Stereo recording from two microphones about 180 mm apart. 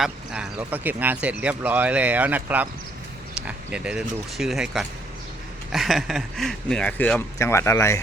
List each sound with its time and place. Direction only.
0.0 s speech: 5° right (ahead or behind); by 8.0 s 15° left (ahead or behind)